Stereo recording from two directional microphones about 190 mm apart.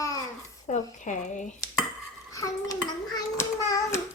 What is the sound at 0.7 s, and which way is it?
Speech, 40° left (ahead or behind).